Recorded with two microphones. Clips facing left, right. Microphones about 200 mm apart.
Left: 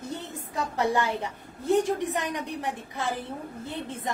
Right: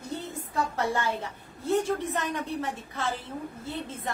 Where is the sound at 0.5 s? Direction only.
15° left (ahead or behind).